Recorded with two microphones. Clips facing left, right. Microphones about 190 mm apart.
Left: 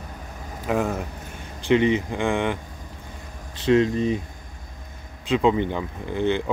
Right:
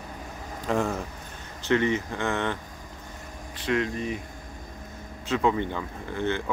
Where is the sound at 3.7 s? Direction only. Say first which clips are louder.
Left 8 dB; 25° left (ahead or behind).